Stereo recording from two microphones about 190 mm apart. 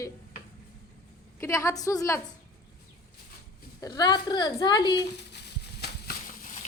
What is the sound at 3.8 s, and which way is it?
A woman's voice, 20° left (ahead or behind).